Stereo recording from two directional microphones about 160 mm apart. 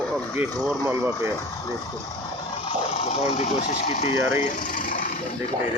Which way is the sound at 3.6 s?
50° left (ahead or behind).